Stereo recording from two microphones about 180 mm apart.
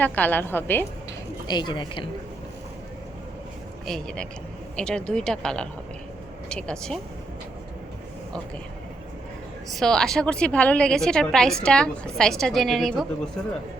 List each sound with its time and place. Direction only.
0.0 s a woman's voice: 10° left (ahead or behind)
1.5 s a woman's voice: 25° left (ahead or behind)
3.8 s a woman's voice: 5° left (ahead or behind)
9.7 s a woman's voice: 5° left (ahead or behind)